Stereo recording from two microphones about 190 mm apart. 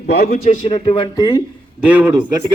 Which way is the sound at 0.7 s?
30° left (ahead or behind).